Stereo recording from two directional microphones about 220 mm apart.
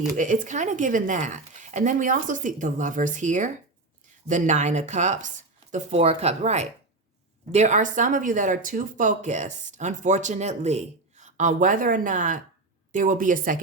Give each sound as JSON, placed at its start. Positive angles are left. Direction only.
{"t": 0.2, "sound": "speech", "side_deg": -35}